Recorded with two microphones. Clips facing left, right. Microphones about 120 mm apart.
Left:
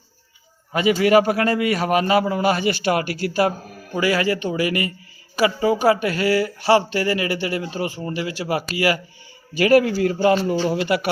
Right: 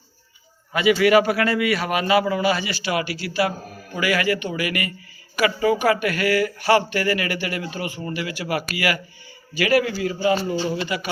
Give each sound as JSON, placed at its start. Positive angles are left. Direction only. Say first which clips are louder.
{"t": 0.7, "sound": "a man's voice", "louder": "even", "side_deg": 40}
{"t": 4.0, "sound": "a man's voice", "louder": "left 2 dB", "side_deg": 35}
{"t": 10.7, "sound": "speech", "louder": "left 5 dB", "side_deg": 65}